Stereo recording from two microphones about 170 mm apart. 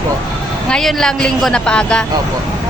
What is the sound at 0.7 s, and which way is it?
Speech, 5° left (ahead or behind).